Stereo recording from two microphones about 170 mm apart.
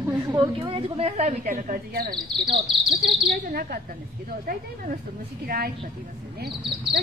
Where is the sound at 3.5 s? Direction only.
65° right (ahead or behind).